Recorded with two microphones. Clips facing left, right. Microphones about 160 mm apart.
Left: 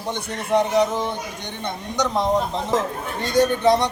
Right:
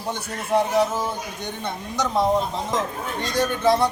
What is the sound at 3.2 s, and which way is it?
Speech, centre (ahead or behind).